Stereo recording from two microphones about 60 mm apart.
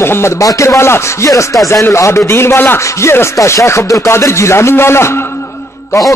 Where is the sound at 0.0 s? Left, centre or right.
Left.